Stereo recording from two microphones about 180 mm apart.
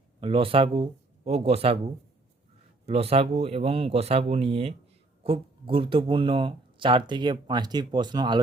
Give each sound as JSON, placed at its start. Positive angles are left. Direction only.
{"t": 0.2, "sound": "speech", "side_deg": -30}